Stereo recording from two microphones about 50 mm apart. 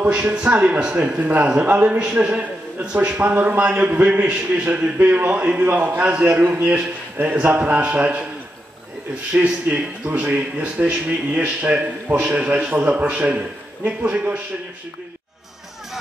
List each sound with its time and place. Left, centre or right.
0.1 s a man's voice: right
1.0 s a man's voice: right; by 3.2 s centre
3.2 s a man's voice: right
6.0 s a man's voice: centre
6.5 s a man's voice: right
9.4 s a man's voice: right